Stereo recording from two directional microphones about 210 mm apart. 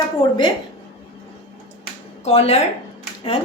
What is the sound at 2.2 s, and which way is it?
Speech, 30° left (ahead or behind).